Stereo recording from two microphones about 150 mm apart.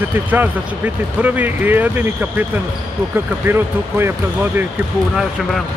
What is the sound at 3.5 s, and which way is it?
Speech, 15° right (ahead or behind).